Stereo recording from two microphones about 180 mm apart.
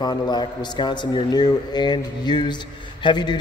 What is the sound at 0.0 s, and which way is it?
A man's voice, 25° left (ahead or behind).